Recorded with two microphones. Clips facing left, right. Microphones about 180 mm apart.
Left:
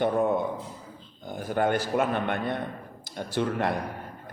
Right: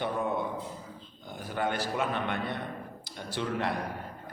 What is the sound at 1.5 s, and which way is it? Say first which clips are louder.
A man's voice: left 6 dB; 50° left (ahead or behind).